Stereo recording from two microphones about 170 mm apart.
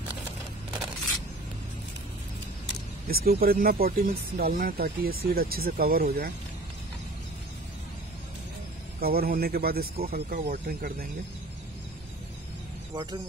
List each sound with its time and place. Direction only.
3.1 s speech: 60° right (ahead or behind)
9.0 s speech: 60° right (ahead or behind)
12.9 s speech: 20° right (ahead or behind)